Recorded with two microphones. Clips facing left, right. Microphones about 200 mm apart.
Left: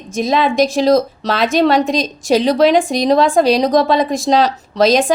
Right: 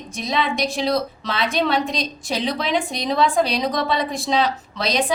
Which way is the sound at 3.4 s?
90° left.